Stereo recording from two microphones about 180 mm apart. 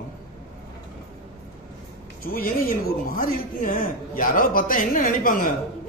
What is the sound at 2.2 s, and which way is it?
A man's voice, 55° left (ahead or behind).